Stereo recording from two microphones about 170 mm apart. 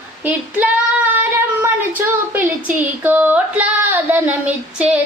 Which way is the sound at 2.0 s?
15° right (ahead or behind).